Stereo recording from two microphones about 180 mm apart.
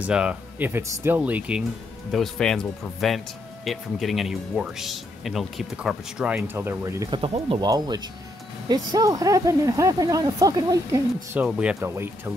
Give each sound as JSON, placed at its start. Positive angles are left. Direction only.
{"t": 0.0, "sound": "speech", "side_deg": -5}
{"t": 7.2, "sound": "speech", "side_deg": -30}
{"t": 11.3, "sound": "speech", "side_deg": -5}